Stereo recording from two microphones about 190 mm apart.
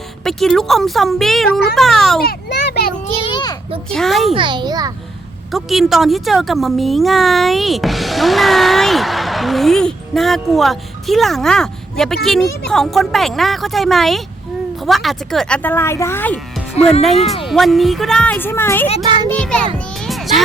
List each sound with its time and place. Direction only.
0.3 s speech: centre (ahead or behind)
2.2 s children playing: 65° left (ahead or behind)
3.2 s a sound: 25° left (ahead or behind)
3.9 s speech: centre (ahead or behind)
4.4 s a child's voice: 25° right (ahead or behind)
5.5 s speech: centre (ahead or behind)
16.8 s speech: 35° left (ahead or behind)
17.4 s speech: centre (ahead or behind)
20.1 s child singing: centre (ahead or behind)